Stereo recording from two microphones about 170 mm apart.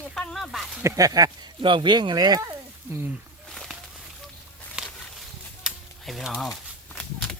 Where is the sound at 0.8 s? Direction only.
20° right (ahead or behind).